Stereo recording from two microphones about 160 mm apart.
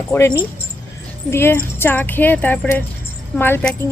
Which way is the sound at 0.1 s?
15° left (ahead or behind).